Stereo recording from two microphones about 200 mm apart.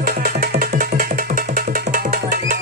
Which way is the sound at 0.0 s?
45° right (ahead or behind).